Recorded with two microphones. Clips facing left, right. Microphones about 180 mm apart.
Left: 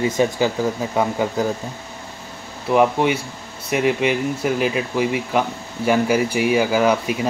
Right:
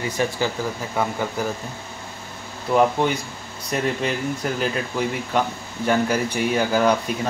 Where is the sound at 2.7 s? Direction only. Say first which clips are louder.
Left 2 dB; 5° left (ahead or behind).